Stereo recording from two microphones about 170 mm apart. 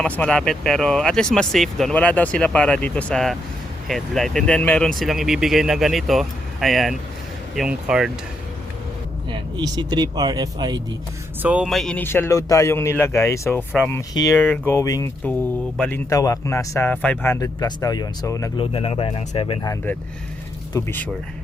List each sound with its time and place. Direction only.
0.0 s speech: 5° left (ahead or behind)
9.3 s speech: 25° right (ahead or behind)
11.4 s a man's voice: 5° right (ahead or behind); by 14.0 s 10° left (ahead or behind)
14.1 s speech: 20° left (ahead or behind)
14.3 s a man's voice: 5° left (ahead or behind)
14.7 s a man's voice: 20° left (ahead or behind)
18.5 s speech: 30° left (ahead or behind)
19.6 s a man's voice: 15° left (ahead or behind)